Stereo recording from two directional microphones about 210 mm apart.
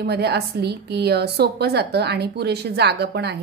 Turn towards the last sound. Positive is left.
turn(degrees=-50)  # may be behind; listen again after turning